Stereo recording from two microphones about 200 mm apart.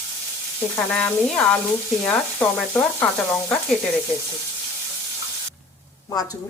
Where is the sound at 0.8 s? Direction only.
5° left (ahead or behind).